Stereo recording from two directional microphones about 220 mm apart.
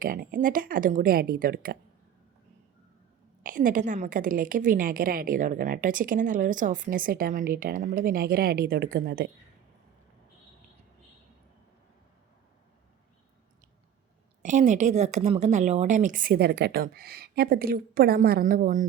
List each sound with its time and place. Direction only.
0.0 s speech: 40° right (ahead or behind)
3.4 s speech: 40° right (ahead or behind)
14.4 s speech: 35° right (ahead or behind)